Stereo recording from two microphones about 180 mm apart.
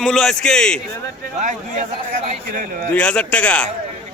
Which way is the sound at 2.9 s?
5° left (ahead or behind).